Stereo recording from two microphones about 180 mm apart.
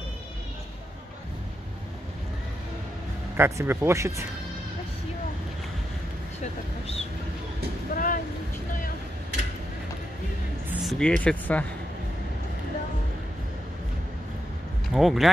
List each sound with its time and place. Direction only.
3.3 s speech: 15° right (ahead or behind)
6.4 s a sound: 35° left (ahead or behind)
7.9 s vehicle: 50° left (ahead or behind)
10.7 s speech: centre (ahead or behind)
15.0 s speech: centre (ahead or behind)